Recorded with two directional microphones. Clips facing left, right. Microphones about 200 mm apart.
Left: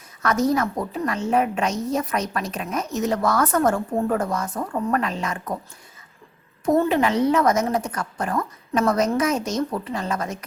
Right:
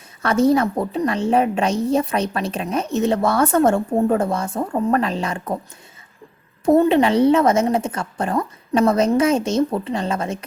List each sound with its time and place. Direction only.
0.2 s a woman's voice: 30° right (ahead or behind)
6.7 s a woman's voice: 25° right (ahead or behind)